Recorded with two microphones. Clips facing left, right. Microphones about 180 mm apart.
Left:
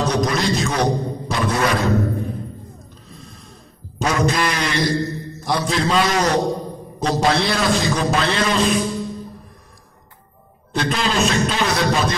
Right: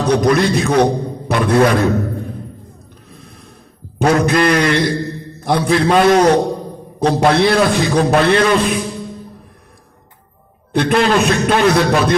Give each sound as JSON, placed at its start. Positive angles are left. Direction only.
{"t": 0.0, "sound": "a man's voice", "side_deg": -60}
{"t": 3.1, "sound": "snort", "side_deg": -60}
{"t": 4.0, "sound": "a man's voice", "side_deg": -60}
{"t": 10.7, "sound": "a man's voice", "side_deg": -60}